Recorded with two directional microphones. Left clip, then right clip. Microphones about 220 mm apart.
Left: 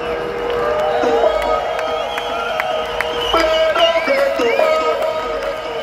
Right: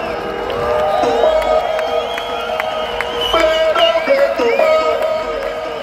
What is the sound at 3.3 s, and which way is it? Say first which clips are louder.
Music: right 1 dB; 25° right (ahead or behind).